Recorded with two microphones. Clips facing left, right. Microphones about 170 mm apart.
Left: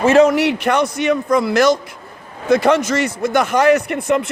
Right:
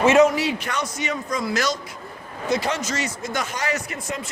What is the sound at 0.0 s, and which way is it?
Speech, 30° left (ahead or behind).